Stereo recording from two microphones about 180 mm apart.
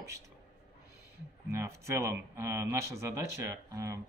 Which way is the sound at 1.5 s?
15° right (ahead or behind).